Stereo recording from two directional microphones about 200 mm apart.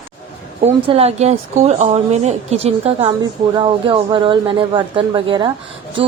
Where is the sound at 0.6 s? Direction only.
30° right (ahead or behind).